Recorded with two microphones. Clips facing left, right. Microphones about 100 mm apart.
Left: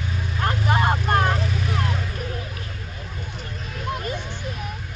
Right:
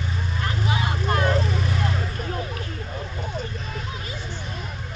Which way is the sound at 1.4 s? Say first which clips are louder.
Right 1 dB; centre (ahead or behind).